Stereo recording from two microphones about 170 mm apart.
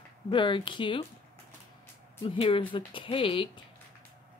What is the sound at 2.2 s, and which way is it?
Speech, 30° left (ahead or behind).